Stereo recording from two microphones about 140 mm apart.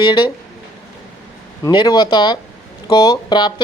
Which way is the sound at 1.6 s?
30° left (ahead or behind).